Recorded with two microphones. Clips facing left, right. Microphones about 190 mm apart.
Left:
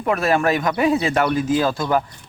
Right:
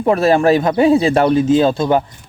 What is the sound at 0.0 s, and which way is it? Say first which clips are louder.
Speech: right 6 dB; 30° right (ahead or behind).